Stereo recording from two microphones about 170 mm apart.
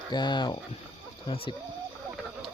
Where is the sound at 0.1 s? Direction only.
25° left (ahead or behind).